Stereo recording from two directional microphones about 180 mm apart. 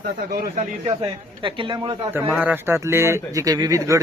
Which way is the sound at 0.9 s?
30° right (ahead or behind).